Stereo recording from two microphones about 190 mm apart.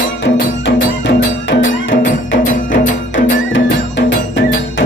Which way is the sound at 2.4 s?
40° left (ahead or behind).